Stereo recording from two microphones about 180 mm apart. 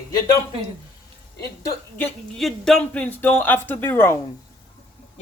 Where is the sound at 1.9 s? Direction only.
5° left (ahead or behind).